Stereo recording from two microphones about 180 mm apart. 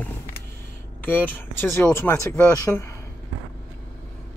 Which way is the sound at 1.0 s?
10° left (ahead or behind).